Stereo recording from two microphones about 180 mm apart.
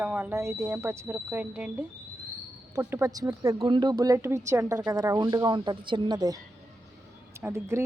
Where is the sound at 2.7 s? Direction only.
15° right (ahead or behind).